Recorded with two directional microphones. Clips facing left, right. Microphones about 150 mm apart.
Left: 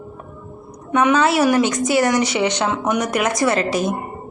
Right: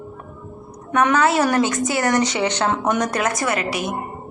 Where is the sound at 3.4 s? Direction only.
35° left (ahead or behind).